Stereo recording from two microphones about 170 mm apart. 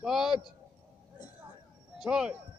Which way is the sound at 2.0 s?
5° right (ahead or behind).